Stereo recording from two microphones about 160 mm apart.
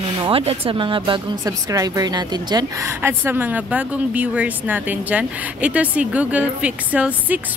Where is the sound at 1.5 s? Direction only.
20° right (ahead or behind).